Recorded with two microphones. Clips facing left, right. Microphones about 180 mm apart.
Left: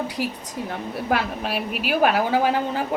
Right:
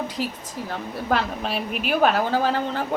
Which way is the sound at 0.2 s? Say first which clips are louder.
Left 1 dB; 10° left (ahead or behind).